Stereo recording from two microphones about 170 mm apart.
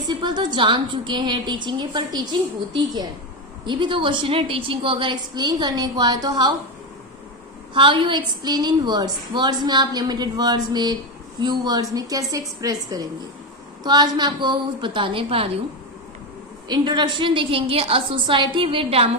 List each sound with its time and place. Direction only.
0.1 s a woman's voice: 25° right (ahead or behind)
7.7 s a woman's voice: 30° right (ahead or behind)
16.6 s a woman's voice: 25° right (ahead or behind)